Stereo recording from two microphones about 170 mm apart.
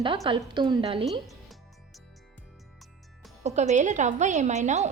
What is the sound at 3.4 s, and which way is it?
A woman's voice, 40° right (ahead or behind).